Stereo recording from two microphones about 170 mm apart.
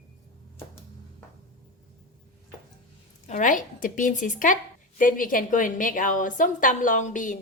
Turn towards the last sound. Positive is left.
turn(degrees=50)  # may be behind; listen again after turning